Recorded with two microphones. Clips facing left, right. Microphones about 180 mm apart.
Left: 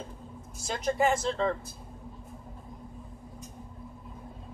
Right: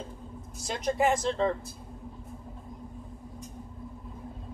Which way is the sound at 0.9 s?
15° right (ahead or behind).